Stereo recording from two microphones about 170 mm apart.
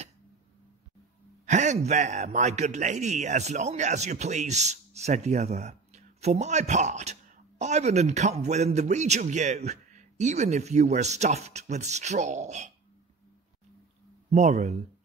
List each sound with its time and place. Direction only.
1.4 s a man's voice: 45° right (ahead or behind)
14.3 s speech: 40° right (ahead or behind)